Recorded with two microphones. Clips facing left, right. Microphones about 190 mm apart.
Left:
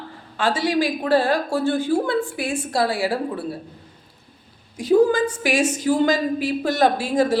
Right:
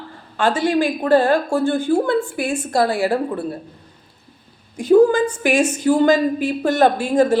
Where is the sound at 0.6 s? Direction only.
50° right (ahead or behind).